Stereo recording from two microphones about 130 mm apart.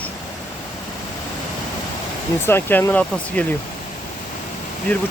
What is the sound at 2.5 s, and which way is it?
Speech, 15° left (ahead or behind).